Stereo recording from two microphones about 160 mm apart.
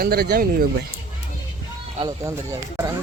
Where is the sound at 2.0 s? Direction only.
20° right (ahead or behind).